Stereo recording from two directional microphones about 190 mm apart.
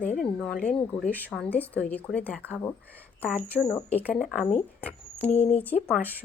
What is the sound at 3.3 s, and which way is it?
Speech, 10° right (ahead or behind).